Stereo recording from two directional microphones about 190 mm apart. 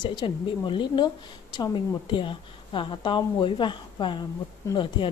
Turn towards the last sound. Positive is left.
turn(degrees=25)  # may be behind; listen again after turning